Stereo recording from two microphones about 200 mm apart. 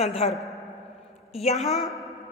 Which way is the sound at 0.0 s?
30° left (ahead or behind).